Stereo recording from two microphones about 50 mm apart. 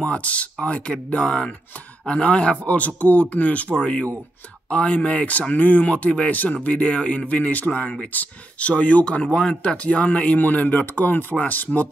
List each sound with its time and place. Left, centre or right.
0.0 s speech: left
9.2 s speech: centre
9.6 s speech: left